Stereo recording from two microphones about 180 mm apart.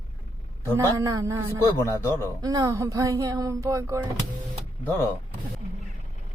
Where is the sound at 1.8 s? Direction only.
15° left (ahead or behind).